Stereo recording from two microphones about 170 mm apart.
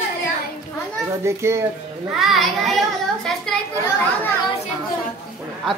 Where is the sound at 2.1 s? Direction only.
Centre (ahead or behind).